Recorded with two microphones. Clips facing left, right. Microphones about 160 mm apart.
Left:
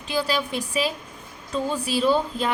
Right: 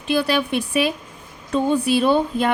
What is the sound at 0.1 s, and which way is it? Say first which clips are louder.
A woman's voice: right 5 dB; 60° right (ahead or behind).